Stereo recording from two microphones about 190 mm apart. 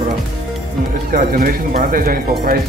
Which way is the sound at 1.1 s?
45° right (ahead or behind).